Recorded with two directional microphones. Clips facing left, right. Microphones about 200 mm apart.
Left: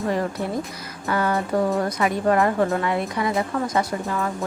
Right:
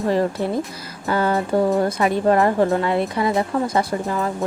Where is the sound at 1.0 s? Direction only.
30° right (ahead or behind).